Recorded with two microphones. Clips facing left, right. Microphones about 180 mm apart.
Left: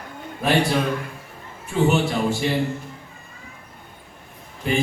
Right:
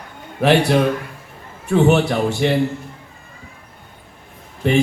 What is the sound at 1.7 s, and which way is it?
Speech, 70° right (ahead or behind).